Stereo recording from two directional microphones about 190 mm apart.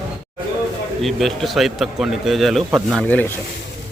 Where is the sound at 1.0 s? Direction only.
Centre (ahead or behind).